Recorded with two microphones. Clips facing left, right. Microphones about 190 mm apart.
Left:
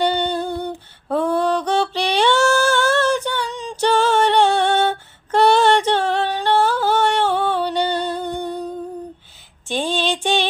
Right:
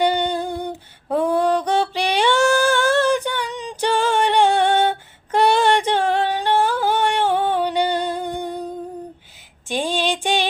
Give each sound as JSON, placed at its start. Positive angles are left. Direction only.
{"t": 0.0, "sound": "humming", "side_deg": -10}
{"t": 1.1, "sound": "female singing", "side_deg": -10}
{"t": 9.6, "sound": "female singing", "side_deg": -10}